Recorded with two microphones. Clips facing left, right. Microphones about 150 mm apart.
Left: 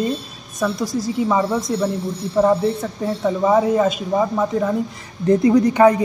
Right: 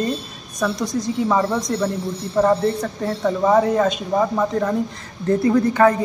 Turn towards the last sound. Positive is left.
turn(degrees=15)  # may be behind; listen again after turning